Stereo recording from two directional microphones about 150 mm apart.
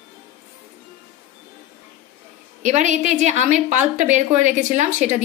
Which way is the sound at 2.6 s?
55° right (ahead or behind).